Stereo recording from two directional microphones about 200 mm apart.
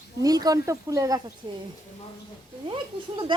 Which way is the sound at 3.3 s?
25° right (ahead or behind).